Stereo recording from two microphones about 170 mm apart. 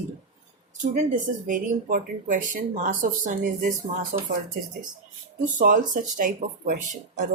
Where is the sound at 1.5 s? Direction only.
50° right (ahead or behind).